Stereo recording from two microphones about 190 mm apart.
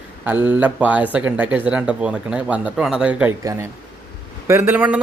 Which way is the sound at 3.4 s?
15° right (ahead or behind).